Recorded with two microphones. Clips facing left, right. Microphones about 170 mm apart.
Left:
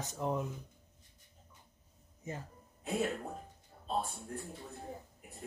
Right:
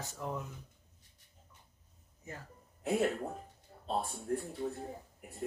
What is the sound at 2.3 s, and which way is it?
Speech, 20° left (ahead or behind).